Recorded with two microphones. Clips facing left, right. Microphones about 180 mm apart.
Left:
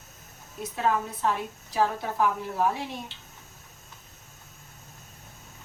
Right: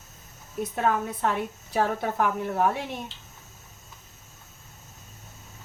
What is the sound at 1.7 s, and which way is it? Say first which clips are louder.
A woman's voice: right 1 dB; 60° right (ahead or behind).